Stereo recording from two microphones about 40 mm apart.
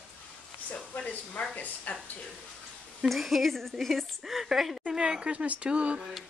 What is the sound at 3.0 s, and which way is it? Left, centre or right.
A woman's voice, centre.